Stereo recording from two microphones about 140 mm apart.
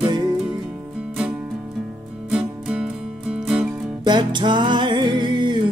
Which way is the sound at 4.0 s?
30° right (ahead or behind).